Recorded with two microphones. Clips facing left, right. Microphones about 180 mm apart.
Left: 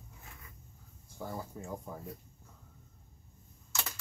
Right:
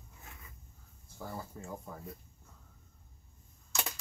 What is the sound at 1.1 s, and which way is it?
Speech, 15° left (ahead or behind).